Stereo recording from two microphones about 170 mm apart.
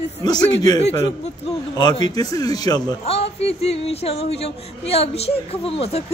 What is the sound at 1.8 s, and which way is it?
Speech, 25° left (ahead or behind).